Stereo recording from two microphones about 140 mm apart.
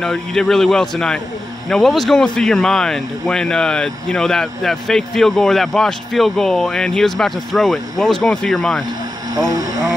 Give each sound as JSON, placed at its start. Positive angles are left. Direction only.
{"t": 0.0, "sound": "speech", "side_deg": 5}
{"t": 9.3, "sound": "speech", "side_deg": -25}